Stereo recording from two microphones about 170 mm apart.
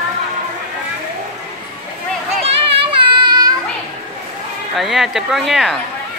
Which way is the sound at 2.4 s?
35° right (ahead or behind).